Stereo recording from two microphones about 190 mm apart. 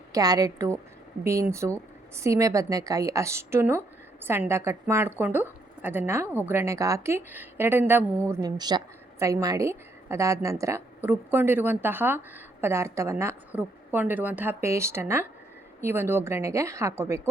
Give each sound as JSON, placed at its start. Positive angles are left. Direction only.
{"t": 0.1, "sound": "a woman's voice", "side_deg": -20}